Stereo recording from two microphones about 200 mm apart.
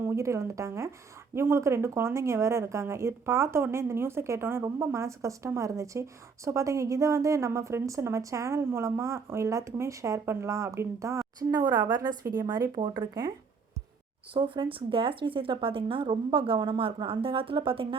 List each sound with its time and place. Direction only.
0.1 s speech: 15° right (ahead or behind)
14.3 s speech: 25° right (ahead or behind)